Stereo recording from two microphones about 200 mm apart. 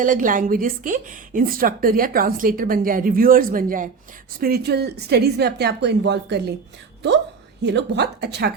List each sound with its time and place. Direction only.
0.0 s a woman's voice: 40° right (ahead or behind); by 6.5 s 60° right (ahead or behind)
7.6 s a woman's voice: 60° right (ahead or behind)